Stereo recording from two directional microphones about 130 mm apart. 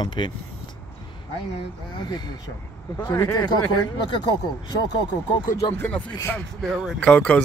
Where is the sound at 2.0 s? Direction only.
35° left (ahead or behind).